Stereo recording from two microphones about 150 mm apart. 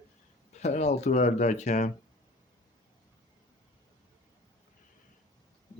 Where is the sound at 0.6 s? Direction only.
50° left (ahead or behind).